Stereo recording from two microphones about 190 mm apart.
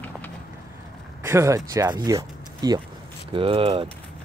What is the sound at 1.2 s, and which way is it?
Speech, 15° right (ahead or behind).